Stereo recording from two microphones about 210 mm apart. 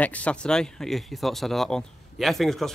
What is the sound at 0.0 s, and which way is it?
Speech, 5° left (ahead or behind).